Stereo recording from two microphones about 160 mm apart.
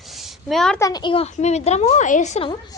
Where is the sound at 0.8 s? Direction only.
25° left (ahead or behind); by 2.5 s 45° left (ahead or behind).